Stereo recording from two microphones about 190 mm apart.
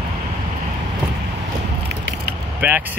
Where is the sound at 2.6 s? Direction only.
10° right (ahead or behind).